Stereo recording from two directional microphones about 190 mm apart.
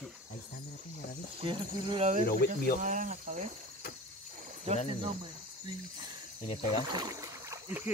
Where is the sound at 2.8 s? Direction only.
45° right (ahead or behind).